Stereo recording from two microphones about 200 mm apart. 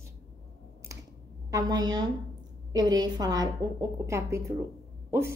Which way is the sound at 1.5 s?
20° right (ahead or behind).